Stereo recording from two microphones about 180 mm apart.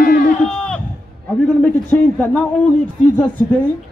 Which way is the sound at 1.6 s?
10° left (ahead or behind).